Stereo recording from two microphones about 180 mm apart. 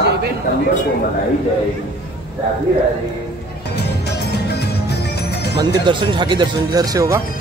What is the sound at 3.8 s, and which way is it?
Music, 65° left (ahead or behind).